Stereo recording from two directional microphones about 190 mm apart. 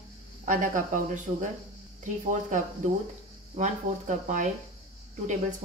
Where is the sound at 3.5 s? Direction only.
40° right (ahead or behind).